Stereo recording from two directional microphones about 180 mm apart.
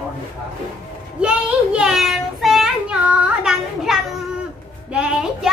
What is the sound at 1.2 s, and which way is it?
Child singing, 5° right (ahead or behind).